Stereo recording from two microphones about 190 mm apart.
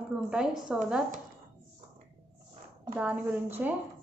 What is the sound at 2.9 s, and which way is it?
Speech, 10° right (ahead or behind).